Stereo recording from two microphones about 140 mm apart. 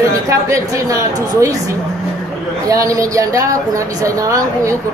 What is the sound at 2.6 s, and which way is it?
Speech, 25° right (ahead or behind).